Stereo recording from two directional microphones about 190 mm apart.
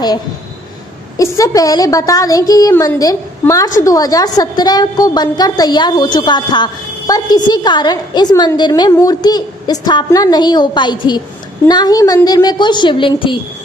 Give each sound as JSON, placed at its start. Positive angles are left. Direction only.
{"t": 1.1, "sound": "a woman's voice", "side_deg": 15}